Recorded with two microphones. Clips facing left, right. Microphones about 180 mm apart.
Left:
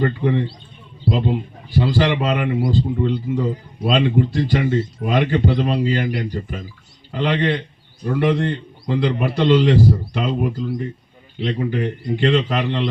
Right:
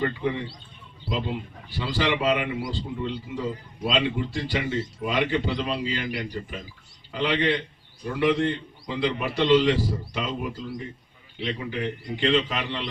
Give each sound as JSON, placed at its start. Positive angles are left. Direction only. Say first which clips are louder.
{"t": 0.0, "sound": "a man's voice", "louder": "left 7 dB", "side_deg": 50}